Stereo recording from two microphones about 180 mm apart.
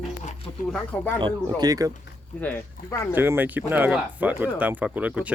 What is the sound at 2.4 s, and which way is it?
Speech, 10° left (ahead or behind).